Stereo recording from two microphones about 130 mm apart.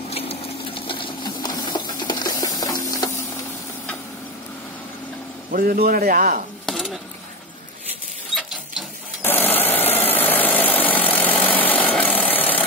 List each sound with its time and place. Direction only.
0.1 s sewing machine: 50° left (ahead or behind); by 3.1 s 25° left (ahead or behind)
5.5 s speech: 90° right
6.6 s a sound: centre (ahead or behind)
9.2 s engine: 15° left (ahead or behind)